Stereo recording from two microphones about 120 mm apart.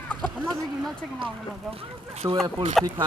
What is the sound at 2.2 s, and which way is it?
Speech, 30° right (ahead or behind).